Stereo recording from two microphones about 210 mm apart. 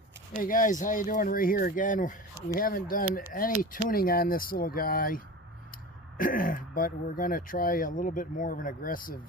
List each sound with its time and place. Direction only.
0.3 s speech: 40° left (ahead or behind)